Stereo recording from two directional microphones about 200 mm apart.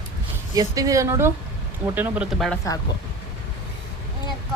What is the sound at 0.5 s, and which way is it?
Speech, 15° right (ahead or behind).